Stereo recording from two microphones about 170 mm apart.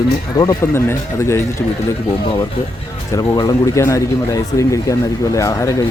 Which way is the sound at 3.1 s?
25° left (ahead or behind).